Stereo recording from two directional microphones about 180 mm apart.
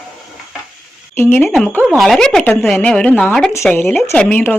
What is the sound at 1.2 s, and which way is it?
A woman's voice, 10° left (ahead or behind).